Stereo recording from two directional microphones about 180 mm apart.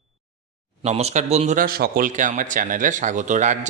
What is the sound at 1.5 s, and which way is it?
Speech, 55° right (ahead or behind).